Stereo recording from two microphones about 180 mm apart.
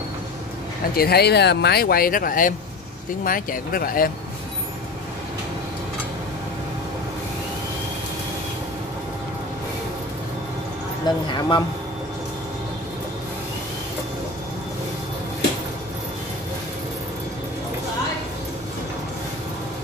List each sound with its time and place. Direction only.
0.9 s speech: 60° left (ahead or behind)
11.1 s speech: 25° left (ahead or behind)